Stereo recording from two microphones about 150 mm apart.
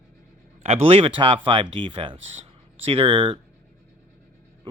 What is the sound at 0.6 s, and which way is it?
Speech, 40° right (ahead or behind).